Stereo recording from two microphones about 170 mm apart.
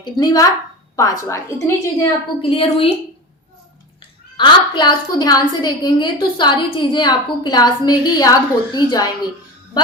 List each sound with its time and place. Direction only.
0.0 s a woman's voice: 25° left (ahead or behind)
2.4 s a woman's voice: 30° left (ahead or behind)
4.4 s a woman's voice: 25° left (ahead or behind)